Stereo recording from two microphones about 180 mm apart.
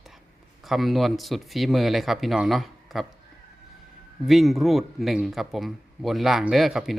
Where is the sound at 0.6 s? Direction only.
Centre (ahead or behind).